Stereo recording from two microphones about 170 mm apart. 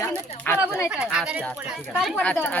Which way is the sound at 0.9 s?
5° right (ahead or behind).